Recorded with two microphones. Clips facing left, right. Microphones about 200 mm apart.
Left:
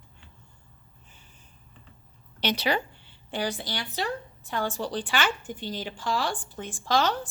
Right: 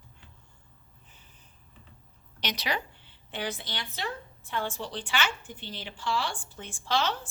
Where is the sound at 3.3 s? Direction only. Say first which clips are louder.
Left 5 dB; 35° left (ahead or behind).